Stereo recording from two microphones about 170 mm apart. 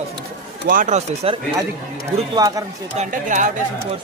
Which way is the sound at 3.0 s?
50° right (ahead or behind).